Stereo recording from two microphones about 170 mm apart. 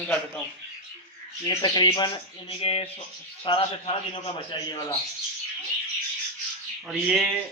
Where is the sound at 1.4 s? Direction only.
25° left (ahead or behind).